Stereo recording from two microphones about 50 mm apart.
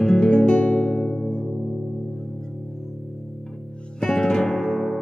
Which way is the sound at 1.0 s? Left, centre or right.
Centre.